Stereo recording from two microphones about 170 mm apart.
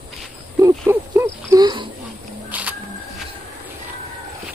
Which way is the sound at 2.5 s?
10° right (ahead or behind).